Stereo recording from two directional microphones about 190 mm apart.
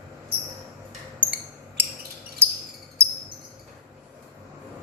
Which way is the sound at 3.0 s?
15° right (ahead or behind).